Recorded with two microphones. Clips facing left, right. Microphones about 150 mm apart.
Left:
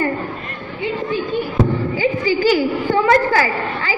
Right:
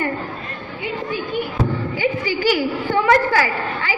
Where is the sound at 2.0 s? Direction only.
35° left (ahead or behind).